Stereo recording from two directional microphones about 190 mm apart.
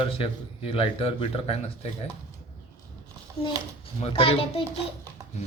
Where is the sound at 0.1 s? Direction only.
30° left (ahead or behind).